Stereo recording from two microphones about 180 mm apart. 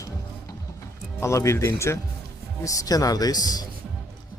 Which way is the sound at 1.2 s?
15° left (ahead or behind).